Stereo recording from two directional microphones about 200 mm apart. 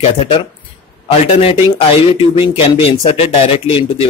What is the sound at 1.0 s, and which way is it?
Speech, 30° left (ahead or behind).